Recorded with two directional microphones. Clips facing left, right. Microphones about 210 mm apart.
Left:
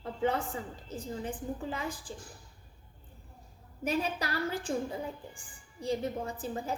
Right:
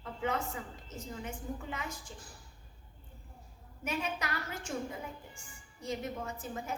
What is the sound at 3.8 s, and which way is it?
A woman's voice, 35° left (ahead or behind).